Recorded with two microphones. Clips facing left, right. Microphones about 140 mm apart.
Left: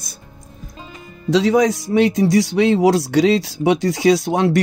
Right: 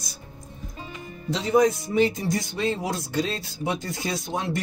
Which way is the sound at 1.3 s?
90° left.